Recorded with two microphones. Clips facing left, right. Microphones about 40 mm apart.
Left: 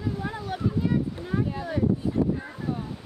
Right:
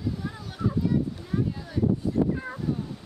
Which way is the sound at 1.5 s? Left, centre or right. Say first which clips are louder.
Left 6 dB; left.